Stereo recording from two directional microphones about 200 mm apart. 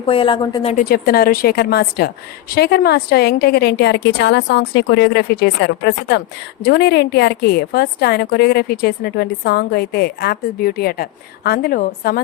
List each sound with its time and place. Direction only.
0.0 s a woman's voice: 25° left (ahead or behind)
0.7 s a woman's voice: 45° left (ahead or behind)